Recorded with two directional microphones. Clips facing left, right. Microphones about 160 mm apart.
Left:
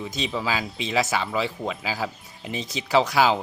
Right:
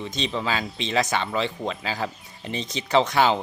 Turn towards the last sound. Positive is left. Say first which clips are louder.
# even
turn(degrees=5)  # may be behind; listen again after turning